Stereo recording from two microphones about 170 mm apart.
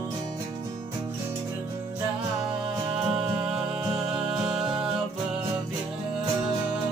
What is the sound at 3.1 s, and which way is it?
Music, 5° right (ahead or behind).